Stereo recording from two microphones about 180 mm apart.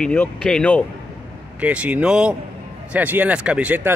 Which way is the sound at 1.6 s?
5° right (ahead or behind).